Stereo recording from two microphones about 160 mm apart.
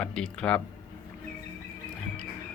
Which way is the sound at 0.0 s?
5° left (ahead or behind).